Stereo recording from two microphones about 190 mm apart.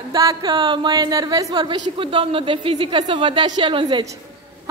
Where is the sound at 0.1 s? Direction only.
20° right (ahead or behind).